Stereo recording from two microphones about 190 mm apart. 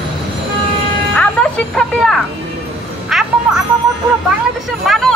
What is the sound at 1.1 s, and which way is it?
Speech, 5° left (ahead or behind).